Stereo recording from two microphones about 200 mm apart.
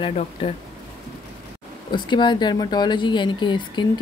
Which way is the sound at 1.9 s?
25° left (ahead or behind).